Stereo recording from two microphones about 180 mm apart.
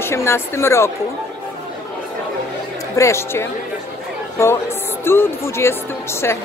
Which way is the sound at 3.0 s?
15° left (ahead or behind).